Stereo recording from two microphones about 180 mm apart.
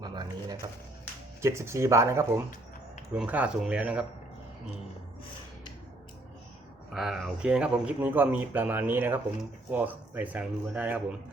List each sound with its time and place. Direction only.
0.0 s a sound: 25° right (ahead or behind)
1.4 s speech: 15° right (ahead or behind)
6.9 s speech: centre (ahead or behind)